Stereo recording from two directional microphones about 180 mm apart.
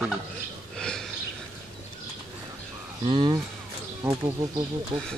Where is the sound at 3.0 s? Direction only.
30° right (ahead or behind).